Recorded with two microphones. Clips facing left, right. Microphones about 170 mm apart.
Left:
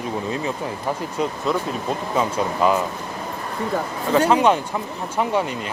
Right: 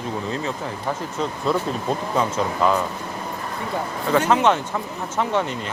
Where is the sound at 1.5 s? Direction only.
Centre (ahead or behind).